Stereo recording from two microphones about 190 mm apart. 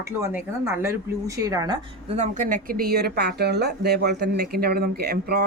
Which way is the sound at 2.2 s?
40° right (ahead or behind).